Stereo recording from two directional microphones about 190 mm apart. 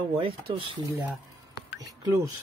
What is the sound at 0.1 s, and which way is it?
Speech, 30° right (ahead or behind).